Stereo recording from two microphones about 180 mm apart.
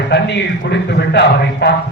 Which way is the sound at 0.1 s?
75° left (ahead or behind).